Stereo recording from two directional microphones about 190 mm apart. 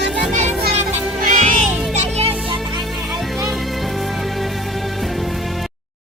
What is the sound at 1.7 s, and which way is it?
Music, 5° right (ahead or behind).